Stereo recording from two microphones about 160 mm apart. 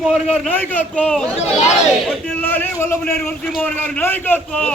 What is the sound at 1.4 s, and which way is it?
Speech, 45° left (ahead or behind).